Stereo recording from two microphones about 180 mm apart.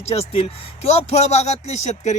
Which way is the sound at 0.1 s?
35° left (ahead or behind).